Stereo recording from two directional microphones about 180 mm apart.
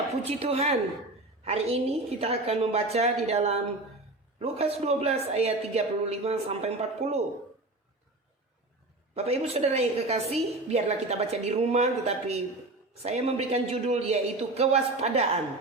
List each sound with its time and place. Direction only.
0.3 s a woman's voice: 35° right (ahead or behind)
9.1 s a woman's voice: 35° right (ahead or behind)